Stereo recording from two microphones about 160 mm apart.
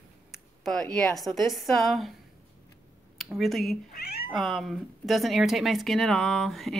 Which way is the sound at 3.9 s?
75° left (ahead or behind).